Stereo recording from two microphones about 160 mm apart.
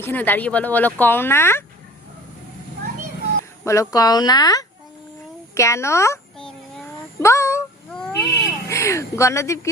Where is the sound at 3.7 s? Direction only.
20° left (ahead or behind).